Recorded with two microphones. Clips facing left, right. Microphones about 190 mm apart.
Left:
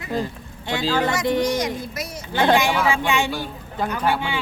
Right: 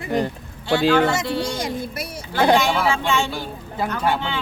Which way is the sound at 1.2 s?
20° left (ahead or behind).